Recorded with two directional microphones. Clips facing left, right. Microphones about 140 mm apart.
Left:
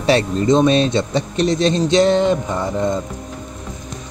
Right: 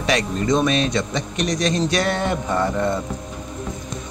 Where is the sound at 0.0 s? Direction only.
30° left (ahead or behind).